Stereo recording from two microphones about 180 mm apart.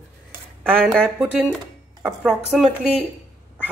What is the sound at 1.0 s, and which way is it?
A woman's voice, 5° right (ahead or behind).